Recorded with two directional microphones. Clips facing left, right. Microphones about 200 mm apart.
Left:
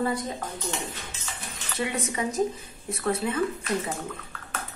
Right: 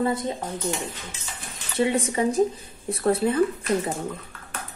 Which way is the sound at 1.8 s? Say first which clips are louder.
Right 7 dB; 30° right (ahead or behind).